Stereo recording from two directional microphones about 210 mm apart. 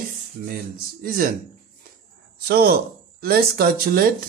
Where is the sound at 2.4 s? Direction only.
45° right (ahead or behind).